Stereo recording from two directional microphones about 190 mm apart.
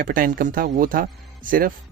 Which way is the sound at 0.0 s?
45° right (ahead or behind).